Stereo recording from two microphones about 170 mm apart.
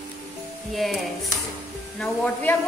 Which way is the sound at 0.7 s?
Centre (ahead or behind).